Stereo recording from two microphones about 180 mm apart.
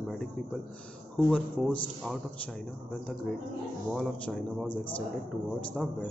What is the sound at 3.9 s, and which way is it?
Speech, centre (ahead or behind).